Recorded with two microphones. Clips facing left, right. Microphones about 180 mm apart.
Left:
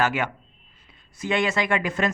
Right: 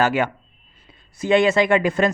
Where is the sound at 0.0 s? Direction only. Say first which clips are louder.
Right 5 dB; 35° right (ahead or behind).